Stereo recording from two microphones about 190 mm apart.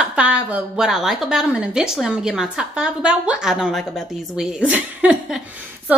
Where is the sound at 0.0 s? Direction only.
5° right (ahead or behind).